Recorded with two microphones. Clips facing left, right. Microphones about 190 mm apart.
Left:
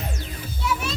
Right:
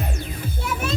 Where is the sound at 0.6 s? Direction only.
50° right (ahead or behind).